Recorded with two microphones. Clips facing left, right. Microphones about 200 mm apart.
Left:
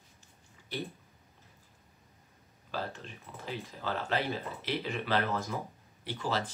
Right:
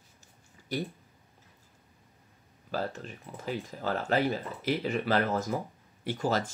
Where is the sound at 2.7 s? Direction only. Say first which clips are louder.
Right 5 dB; 45° right (ahead or behind).